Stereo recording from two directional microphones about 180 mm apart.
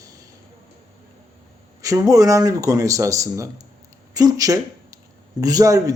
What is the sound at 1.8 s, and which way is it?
Speech, 20° right (ahead or behind).